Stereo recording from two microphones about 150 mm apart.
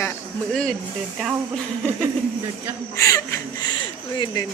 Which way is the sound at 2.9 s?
20° left (ahead or behind).